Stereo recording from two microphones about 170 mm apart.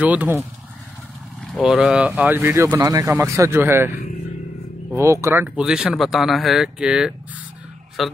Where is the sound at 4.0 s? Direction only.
55° left (ahead or behind).